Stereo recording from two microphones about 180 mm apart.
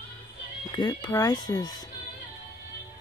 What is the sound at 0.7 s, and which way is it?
Speech, 20° left (ahead or behind).